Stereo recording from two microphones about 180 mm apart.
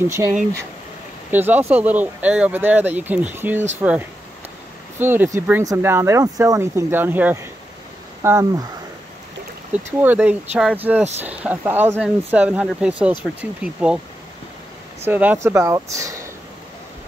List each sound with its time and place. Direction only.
0.0 s speech: 15° right (ahead or behind)
1.3 s speech: 10° right (ahead or behind)
4.9 s speech: 10° right (ahead or behind)
10.0 s speech: 10° right (ahead or behind)
15.0 s speech: 10° right (ahead or behind)